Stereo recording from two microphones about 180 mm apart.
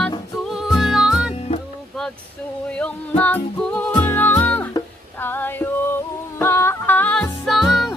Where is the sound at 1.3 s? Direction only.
35° left (ahead or behind).